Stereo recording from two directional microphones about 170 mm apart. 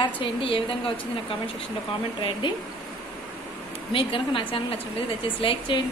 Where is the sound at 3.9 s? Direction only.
30° left (ahead or behind).